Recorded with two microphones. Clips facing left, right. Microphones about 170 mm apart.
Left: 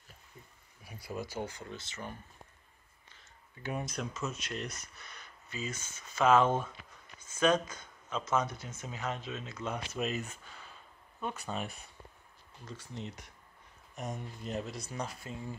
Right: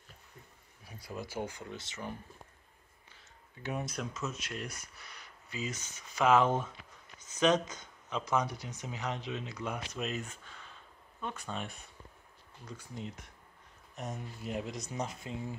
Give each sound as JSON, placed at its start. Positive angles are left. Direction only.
{"t": 0.8, "sound": "a sound", "side_deg": 10}
{"t": 1.2, "sound": "speech", "side_deg": -10}
{"t": 3.6, "sound": "speech", "side_deg": 0}
{"t": 9.9, "sound": "speech", "side_deg": 5}
{"t": 12.6, "sound": "speech", "side_deg": -5}